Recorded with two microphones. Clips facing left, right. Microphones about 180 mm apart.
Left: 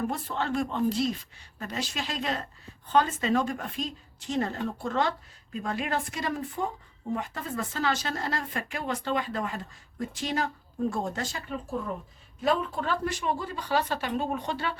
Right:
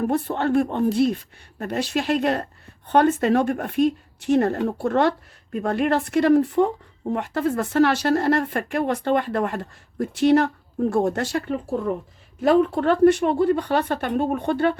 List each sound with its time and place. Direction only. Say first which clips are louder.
0.1 s speech: right 9 dB; 65° right (ahead or behind)